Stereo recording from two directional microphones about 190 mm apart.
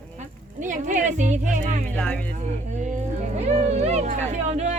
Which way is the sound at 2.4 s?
40° right (ahead or behind).